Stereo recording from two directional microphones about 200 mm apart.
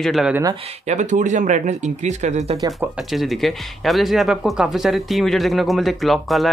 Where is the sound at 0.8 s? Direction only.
35° right (ahead or behind).